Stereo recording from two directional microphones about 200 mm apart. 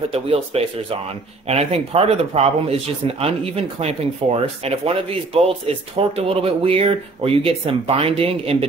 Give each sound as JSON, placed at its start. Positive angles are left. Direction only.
{"t": 0.1, "sound": "speech", "side_deg": -30}